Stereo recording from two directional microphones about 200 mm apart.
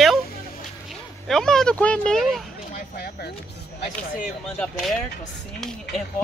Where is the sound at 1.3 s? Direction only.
Centre (ahead or behind).